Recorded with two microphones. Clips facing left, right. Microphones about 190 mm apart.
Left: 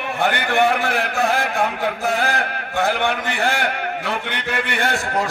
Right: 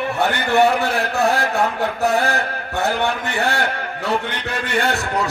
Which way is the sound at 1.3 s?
70° right (ahead or behind).